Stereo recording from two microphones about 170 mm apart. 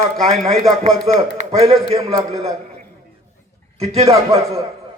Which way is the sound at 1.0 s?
40° right (ahead or behind).